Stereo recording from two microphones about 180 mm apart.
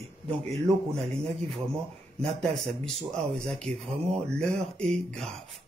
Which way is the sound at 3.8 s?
35° right (ahead or behind).